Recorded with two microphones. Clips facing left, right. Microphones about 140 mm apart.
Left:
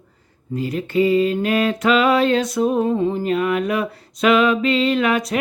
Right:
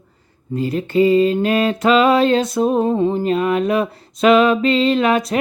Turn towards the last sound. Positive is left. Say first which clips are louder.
# right 3 dB
turn(degrees=-30)  # may be behind; listen again after turning